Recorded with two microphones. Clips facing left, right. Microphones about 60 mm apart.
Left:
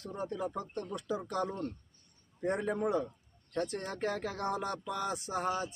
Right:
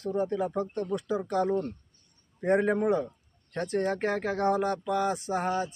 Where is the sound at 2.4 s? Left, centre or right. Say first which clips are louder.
Right 8 dB; right.